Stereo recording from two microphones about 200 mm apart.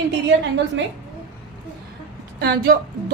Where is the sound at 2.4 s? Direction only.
55° right (ahead or behind).